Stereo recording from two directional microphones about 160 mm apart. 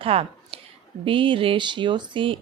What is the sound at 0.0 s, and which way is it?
A woman's voice, 35° right (ahead or behind).